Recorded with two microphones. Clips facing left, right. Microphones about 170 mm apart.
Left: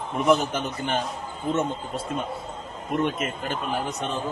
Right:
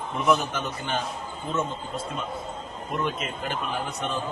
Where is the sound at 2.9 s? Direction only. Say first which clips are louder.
Left 4 dB; 45° left (ahead or behind).